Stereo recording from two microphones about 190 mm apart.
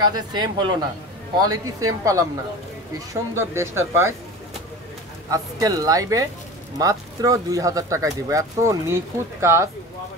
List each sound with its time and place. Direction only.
0.0 s speech: 20° right (ahead or behind)
3.1 s speech: 15° right (ahead or behind)
5.3 s speech: 20° right (ahead or behind)